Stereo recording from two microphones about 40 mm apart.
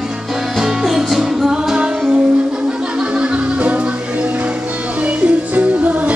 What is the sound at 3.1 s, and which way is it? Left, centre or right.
Music, right.